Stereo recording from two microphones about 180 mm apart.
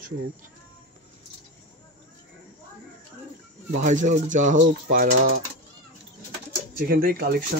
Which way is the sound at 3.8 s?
45° right (ahead or behind).